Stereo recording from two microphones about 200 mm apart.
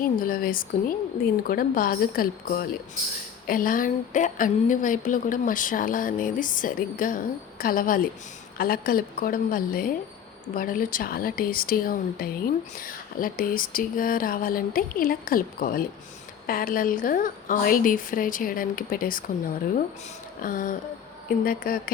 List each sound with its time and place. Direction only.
0.0 s a woman's voice: 45° left (ahead or behind)
20.4 s a woman's voice: 45° left (ahead or behind)